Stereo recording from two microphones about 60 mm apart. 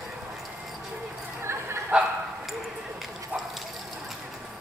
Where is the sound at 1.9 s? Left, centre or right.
Centre.